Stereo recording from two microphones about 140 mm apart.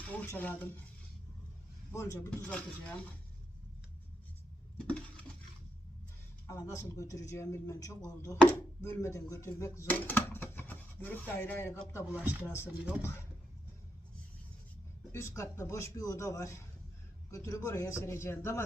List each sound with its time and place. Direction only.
0.0 s speech: 10° left (ahead or behind)
1.9 s a man's voice: 20° left (ahead or behind)
2.5 s speech: 5° left (ahead or behind)
4.8 s a sound: 10° left (ahead or behind)
6.5 s a man's voice: 25° left (ahead or behind)
8.4 s speech: 10° left (ahead or behind)
9.0 s speech: 20° left (ahead or behind)
12.1 s speech: 15° right (ahead or behind)
13.0 s speech: 20° left (ahead or behind)
15.1 s a man's voice: 20° left (ahead or behind)